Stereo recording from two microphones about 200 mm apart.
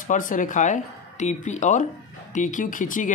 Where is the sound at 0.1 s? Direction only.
40° left (ahead or behind).